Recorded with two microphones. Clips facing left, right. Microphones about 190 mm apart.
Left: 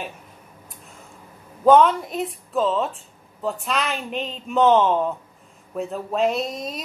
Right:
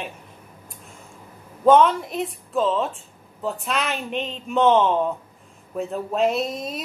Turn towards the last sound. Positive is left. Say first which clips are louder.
# right 1 dB
turn(degrees=0)  # may be behind; listen again after turning